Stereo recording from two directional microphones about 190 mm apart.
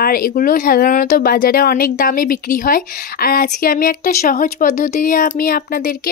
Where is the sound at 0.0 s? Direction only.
50° left (ahead or behind).